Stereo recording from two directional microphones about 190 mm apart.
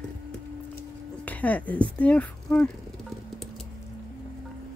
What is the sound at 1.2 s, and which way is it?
Speech, 10° left (ahead or behind).